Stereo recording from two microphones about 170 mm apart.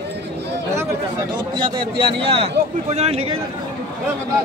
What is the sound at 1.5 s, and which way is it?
A man's voice, 30° right (ahead or behind).